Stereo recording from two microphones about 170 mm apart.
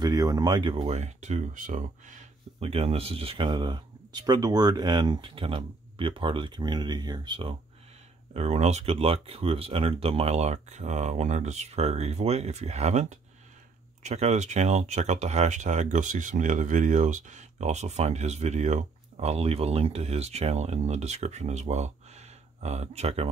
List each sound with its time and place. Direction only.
0.0 s speech: 20° right (ahead or behind)
0.9 s speech: 45° right (ahead or behind)
2.6 s speech: 35° right (ahead or behind)
8.3 s speech: 40° right (ahead or behind)